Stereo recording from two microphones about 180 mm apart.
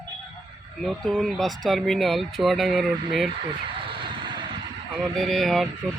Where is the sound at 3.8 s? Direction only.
30° right (ahead or behind).